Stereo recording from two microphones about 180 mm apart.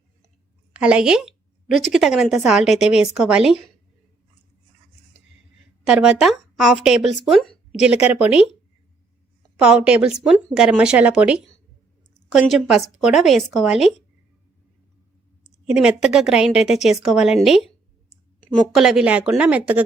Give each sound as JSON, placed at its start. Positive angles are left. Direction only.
{"t": 0.7, "sound": "a woman's voice", "side_deg": -5}
{"t": 5.8, "sound": "speech", "side_deg": -5}
{"t": 9.6, "sound": "a woman's voice", "side_deg": -5}
{"t": 15.6, "sound": "a woman's voice", "side_deg": -5}